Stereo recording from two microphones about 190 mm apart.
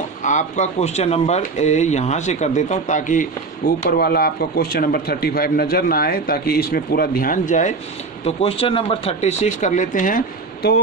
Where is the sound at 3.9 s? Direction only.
55° left (ahead or behind).